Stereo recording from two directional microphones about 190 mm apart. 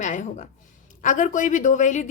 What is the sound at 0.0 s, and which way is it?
A woman's voice, 40° left (ahead or behind).